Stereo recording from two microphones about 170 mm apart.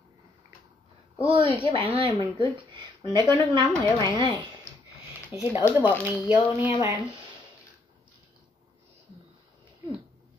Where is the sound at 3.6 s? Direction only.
20° left (ahead or behind).